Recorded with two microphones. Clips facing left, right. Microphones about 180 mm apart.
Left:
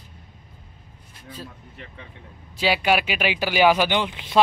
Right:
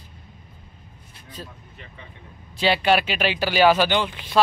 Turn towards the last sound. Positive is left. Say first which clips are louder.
# right 1 dB
turn(degrees=20)  # may be behind; listen again after turning